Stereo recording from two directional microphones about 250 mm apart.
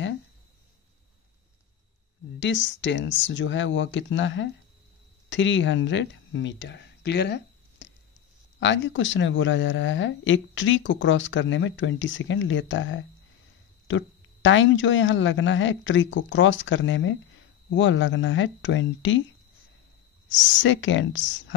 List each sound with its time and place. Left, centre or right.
2.4 s speech: left
20.2 s speech: left